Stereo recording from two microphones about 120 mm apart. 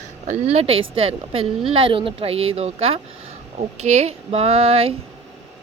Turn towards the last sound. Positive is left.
turn(degrees=-55)  # may be behind; listen again after turning